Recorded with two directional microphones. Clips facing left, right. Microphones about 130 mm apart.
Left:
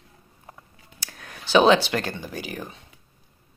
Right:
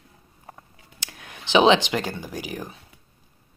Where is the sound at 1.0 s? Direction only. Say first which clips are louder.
Even; 15° right (ahead or behind).